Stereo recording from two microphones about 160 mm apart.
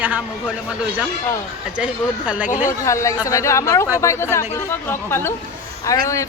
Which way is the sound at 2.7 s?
20° left (ahead or behind).